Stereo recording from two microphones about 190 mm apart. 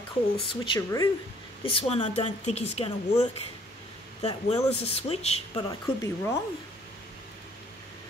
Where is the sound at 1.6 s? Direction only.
30° left (ahead or behind).